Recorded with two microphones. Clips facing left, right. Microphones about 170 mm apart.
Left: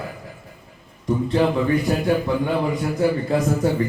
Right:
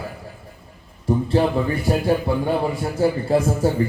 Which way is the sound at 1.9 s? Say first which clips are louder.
Right 1 dB; 30° right (ahead or behind).